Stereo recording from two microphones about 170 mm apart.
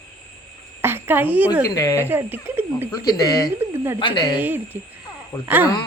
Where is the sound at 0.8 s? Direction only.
15° right (ahead or behind).